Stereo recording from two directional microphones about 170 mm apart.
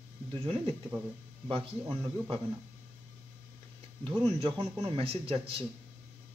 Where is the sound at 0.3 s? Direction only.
35° right (ahead or behind).